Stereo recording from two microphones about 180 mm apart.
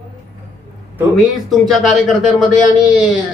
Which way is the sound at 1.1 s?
Centre (ahead or behind).